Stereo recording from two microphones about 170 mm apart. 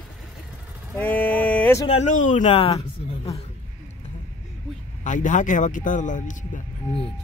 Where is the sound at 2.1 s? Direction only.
50° left (ahead or behind).